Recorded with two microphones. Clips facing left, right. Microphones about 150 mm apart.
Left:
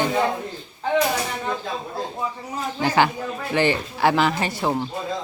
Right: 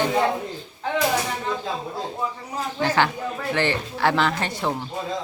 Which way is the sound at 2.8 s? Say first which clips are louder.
Left 2 dB; 10° left (ahead or behind).